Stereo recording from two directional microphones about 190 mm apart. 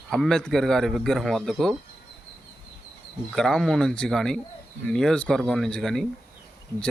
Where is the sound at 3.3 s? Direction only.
5° left (ahead or behind).